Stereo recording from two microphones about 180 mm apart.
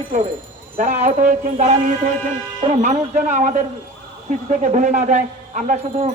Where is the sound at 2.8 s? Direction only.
40° right (ahead or behind).